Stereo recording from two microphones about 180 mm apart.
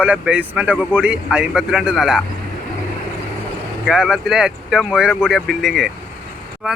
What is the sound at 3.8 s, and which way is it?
A man's voice, centre (ahead or behind).